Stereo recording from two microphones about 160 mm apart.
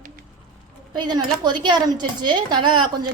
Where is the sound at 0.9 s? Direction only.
25° right (ahead or behind).